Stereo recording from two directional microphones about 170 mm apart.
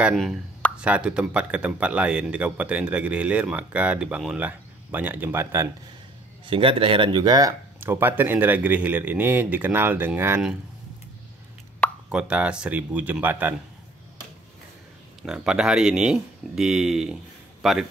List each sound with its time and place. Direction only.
0.0 s speech: centre (ahead or behind)
6.4 s speech: 30° right (ahead or behind)
7.8 s speech: 10° right (ahead or behind)
12.1 s speech: 5° right (ahead or behind)
15.2 s speech: 5° right (ahead or behind)